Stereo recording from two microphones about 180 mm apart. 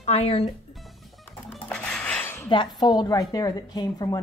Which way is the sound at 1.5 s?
5° left (ahead or behind).